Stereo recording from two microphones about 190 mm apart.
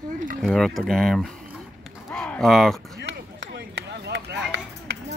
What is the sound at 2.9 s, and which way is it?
Chop, 70° right (ahead or behind).